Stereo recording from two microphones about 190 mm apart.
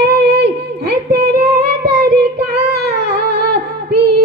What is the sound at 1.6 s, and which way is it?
Singing, 60° right (ahead or behind).